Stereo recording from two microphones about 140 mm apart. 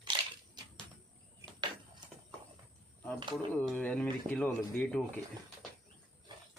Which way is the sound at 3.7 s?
10° left (ahead or behind).